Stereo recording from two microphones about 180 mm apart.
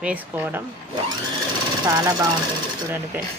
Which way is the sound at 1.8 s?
20° right (ahead or behind).